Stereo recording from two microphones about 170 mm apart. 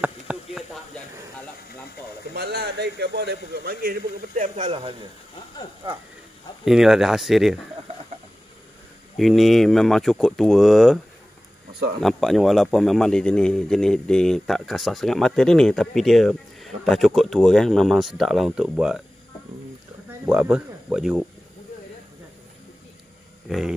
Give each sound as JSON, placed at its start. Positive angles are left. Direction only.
{"t": 0.0, "sound": "a sound", "side_deg": -5}
{"t": 2.3, "sound": "a man's voice", "side_deg": -75}
{"t": 6.6, "sound": "speech", "side_deg": 0}
{"t": 9.1, "sound": "speech", "side_deg": 0}
{"t": 12.0, "sound": "speech", "side_deg": 0}
{"t": 20.1, "sound": "speech", "side_deg": -10}
{"t": 23.5, "sound": "speech", "side_deg": 0}